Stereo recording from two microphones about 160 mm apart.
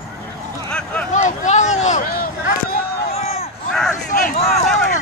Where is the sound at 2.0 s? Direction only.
65° left (ahead or behind).